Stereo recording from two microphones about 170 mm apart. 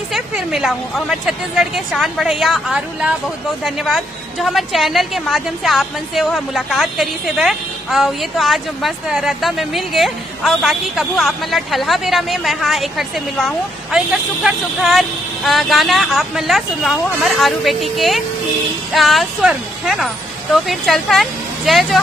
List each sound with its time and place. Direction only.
0.1 s a woman's voice: centre (ahead or behind)